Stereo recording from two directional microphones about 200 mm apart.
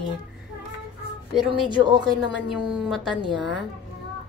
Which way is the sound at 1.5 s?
25° right (ahead or behind).